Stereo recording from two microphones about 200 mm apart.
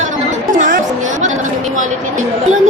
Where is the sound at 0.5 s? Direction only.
40° right (ahead or behind).